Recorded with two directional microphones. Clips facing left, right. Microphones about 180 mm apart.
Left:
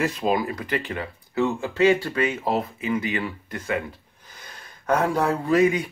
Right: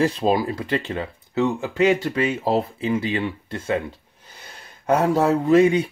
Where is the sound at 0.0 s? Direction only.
30° right (ahead or behind).